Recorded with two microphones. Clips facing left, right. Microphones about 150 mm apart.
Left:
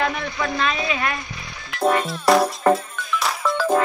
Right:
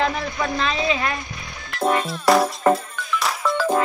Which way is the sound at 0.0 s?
30° right (ahead or behind).